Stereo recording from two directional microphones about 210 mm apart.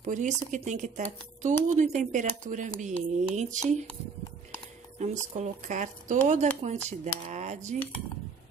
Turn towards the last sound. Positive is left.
turn(degrees=-35)  # may be behind; listen again after turning